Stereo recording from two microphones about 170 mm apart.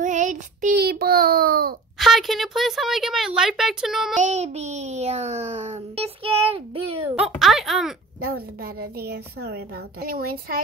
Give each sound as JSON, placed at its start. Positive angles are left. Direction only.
{"t": 0.0, "sound": "child singing", "side_deg": -45}
{"t": 0.7, "sound": "child singing", "side_deg": -65}
{"t": 2.0, "sound": "speech", "side_deg": 0}
{"t": 4.2, "sound": "a child's voice", "side_deg": -40}
{"t": 7.2, "sound": "speech", "side_deg": 0}
{"t": 9.0, "sound": "a child's voice", "side_deg": -70}